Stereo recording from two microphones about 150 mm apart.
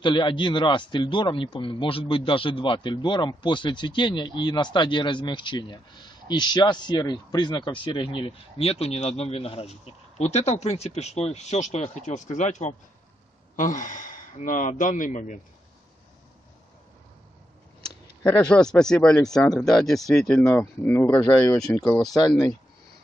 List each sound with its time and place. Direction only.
0.0 s speech: 30° left (ahead or behind); by 15.3 s 60° left (ahead or behind)
18.2 s speech: 10° left (ahead or behind)